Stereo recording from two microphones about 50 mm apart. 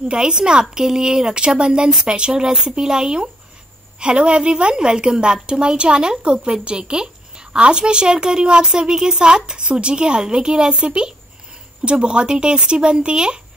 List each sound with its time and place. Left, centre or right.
0.1 s a woman's voice: centre